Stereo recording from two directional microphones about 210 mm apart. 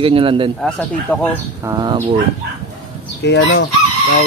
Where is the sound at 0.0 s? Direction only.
25° right (ahead or behind).